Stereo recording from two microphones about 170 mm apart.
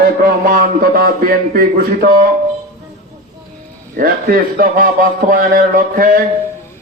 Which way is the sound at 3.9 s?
55° right (ahead or behind).